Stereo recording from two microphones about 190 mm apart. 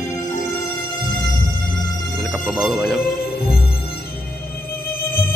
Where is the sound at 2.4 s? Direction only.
Centre (ahead or behind).